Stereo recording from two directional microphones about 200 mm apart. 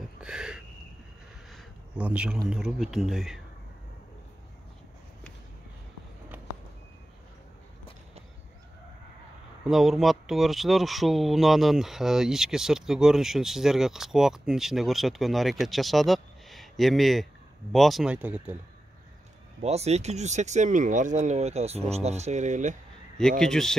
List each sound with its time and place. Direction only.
0.2 s a sound: 5° right (ahead or behind)
2.5 s speech: centre (ahead or behind)
9.7 s speech: centre (ahead or behind)
19.6 s speech: 30° right (ahead or behind)
23.4 s speech: centre (ahead or behind)